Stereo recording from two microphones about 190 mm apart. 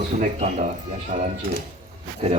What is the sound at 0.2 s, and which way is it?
Speech, 40° right (ahead or behind).